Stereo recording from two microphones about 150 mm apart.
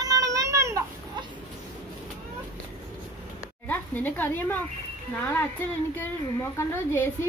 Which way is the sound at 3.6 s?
10° left (ahead or behind).